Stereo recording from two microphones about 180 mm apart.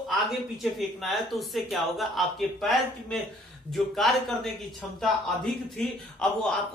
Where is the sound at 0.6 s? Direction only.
Centre (ahead or behind).